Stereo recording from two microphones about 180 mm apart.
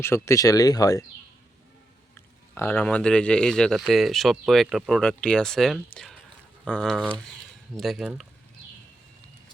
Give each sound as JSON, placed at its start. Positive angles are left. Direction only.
{"t": 0.0, "sound": "speech", "side_deg": 15}
{"t": 2.6, "sound": "speech", "side_deg": 10}